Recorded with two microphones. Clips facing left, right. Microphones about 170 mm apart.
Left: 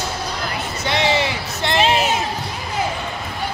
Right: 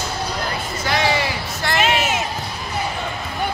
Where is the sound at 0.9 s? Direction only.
20° left (ahead or behind).